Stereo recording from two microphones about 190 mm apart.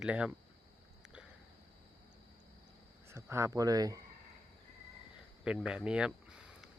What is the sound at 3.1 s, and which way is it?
Speech, 15° right (ahead or behind).